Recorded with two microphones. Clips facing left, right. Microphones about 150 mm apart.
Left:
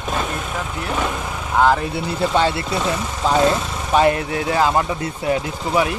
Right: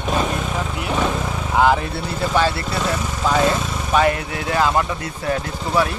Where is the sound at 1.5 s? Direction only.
5° right (ahead or behind).